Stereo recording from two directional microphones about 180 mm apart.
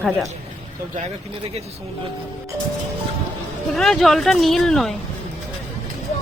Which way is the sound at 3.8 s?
Centre (ahead or behind).